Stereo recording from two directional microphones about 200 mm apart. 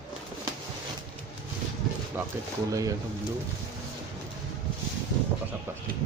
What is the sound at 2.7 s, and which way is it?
Speech, 15° right (ahead or behind).